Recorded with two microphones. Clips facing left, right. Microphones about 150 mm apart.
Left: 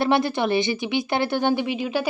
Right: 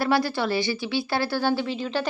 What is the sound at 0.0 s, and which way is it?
A woman's voice, 20° left (ahead or behind).